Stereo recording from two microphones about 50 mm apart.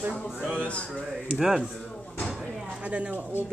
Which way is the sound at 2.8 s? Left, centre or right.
Right.